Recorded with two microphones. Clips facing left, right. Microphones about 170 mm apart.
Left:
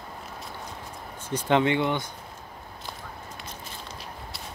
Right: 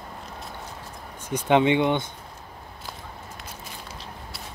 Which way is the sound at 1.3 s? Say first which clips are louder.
Right 3 dB; 20° right (ahead or behind).